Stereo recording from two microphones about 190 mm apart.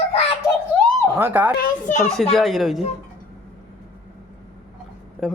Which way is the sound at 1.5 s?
45° left (ahead or behind).